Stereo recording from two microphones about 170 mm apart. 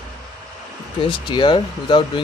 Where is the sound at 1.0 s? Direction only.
30° left (ahead or behind).